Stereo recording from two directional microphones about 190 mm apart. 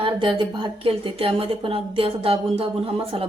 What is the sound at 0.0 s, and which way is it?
A woman's voice, 25° right (ahead or behind).